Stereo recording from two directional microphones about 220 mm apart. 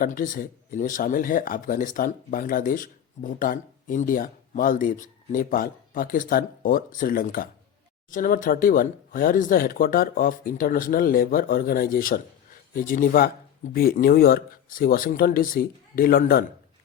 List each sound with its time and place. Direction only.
0.0 s speech: 40° left (ahead or behind)